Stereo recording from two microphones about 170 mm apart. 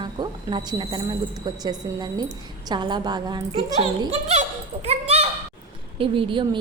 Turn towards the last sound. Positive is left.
turn(degrees=-30)  # may be behind; listen again after turning